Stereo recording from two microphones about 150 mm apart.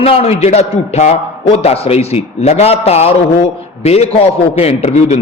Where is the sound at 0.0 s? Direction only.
45° left (ahead or behind).